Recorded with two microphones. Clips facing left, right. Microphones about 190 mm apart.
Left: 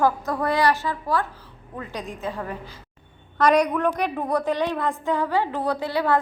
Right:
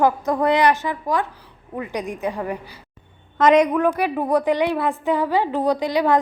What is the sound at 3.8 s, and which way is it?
A woman's voice, 5° right (ahead or behind).